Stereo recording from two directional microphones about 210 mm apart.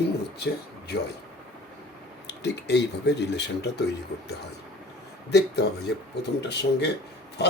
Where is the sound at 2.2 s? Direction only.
55° left (ahead or behind).